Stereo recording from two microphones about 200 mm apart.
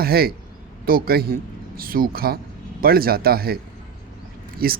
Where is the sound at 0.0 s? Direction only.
50° right (ahead or behind).